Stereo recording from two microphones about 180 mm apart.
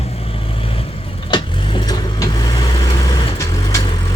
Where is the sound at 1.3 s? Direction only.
25° left (ahead or behind).